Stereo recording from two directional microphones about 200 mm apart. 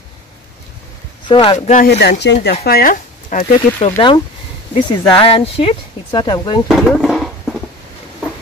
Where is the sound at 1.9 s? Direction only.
55° left (ahead or behind).